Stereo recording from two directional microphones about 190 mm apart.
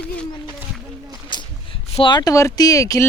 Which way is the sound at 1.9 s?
25° left (ahead or behind).